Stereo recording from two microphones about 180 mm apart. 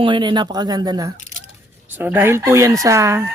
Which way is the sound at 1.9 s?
10° right (ahead or behind).